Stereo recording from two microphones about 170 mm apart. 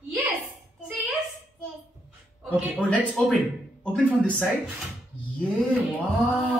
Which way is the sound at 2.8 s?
5° left (ahead or behind).